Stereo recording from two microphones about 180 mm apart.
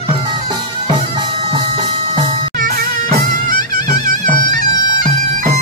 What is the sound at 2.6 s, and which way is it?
Music, 50° right (ahead or behind).